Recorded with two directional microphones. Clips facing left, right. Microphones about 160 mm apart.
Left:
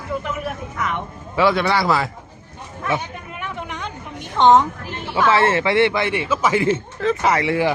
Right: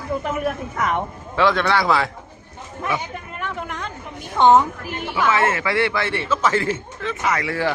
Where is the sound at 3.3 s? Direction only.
Centre (ahead or behind).